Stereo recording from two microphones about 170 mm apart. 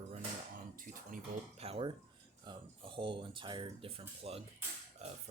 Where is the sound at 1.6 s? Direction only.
35° right (ahead or behind).